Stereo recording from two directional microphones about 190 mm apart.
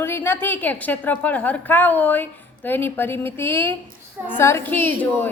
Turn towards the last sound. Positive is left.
turn(degrees=10)  # may be behind; listen again after turning